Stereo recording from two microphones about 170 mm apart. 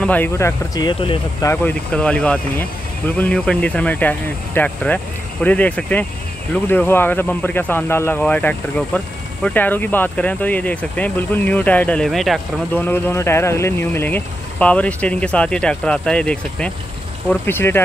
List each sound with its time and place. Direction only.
0.0 s speech: 10° left (ahead or behind)
0.7 s speech: 25° left (ahead or behind)
1.5 s speech: 10° left (ahead or behind)
12.8 s speech: 10° left (ahead or behind)